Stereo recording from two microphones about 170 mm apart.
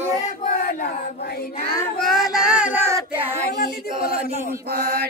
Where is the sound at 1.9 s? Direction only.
Centre (ahead or behind).